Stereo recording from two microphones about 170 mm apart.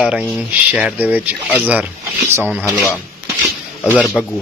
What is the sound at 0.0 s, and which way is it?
Speech, centre (ahead or behind).